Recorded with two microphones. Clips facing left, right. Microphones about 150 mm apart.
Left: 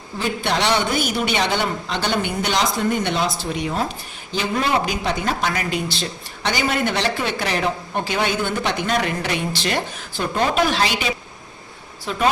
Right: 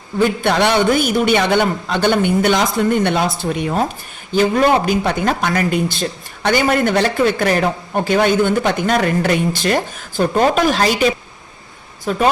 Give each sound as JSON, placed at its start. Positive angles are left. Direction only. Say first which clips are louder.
{"t": 0.2, "sound": "a man's voice", "louder": "right 7 dB", "side_deg": -55}